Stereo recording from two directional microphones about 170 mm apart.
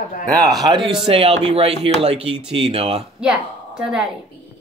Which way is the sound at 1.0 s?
35° right (ahead or behind).